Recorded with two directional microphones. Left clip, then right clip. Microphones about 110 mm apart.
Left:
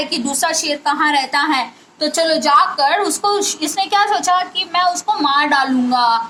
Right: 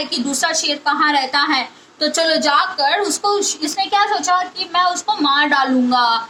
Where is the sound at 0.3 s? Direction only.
35° right (ahead or behind).